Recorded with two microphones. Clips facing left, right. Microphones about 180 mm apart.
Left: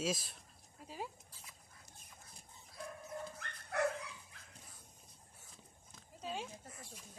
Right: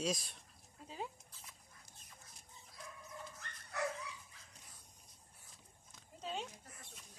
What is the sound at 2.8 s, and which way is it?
Dog, 60° left (ahead or behind).